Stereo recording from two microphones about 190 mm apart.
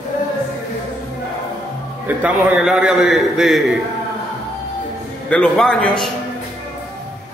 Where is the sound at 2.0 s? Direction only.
5° right (ahead or behind).